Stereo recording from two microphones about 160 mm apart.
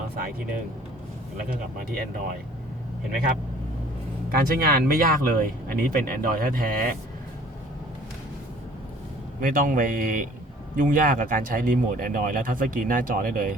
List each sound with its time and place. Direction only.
4.3 s speech: 70° right (ahead or behind)
9.4 s speech: 60° right (ahead or behind)